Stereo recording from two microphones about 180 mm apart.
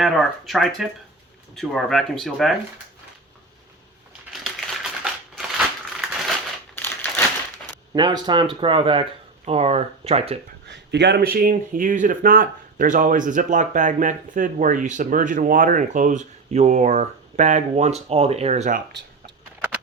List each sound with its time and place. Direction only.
0.0 s speech: centre (ahead or behind)
4.3 s a sound: 5° right (ahead or behind)
5.3 s crushing: 5° right (ahead or behind)
6.7 s a sound: 10° left (ahead or behind)
7.9 s speech: 25° right (ahead or behind)
10.7 s speech: 75° right (ahead or behind); by 18.8 s 40° right (ahead or behind)